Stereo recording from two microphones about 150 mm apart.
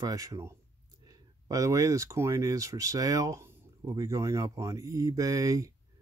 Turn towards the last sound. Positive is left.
turn(degrees=-25)  # may be behind; listen again after turning